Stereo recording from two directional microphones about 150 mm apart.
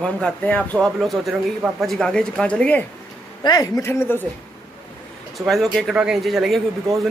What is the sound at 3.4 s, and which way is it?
Speech, 25° left (ahead or behind).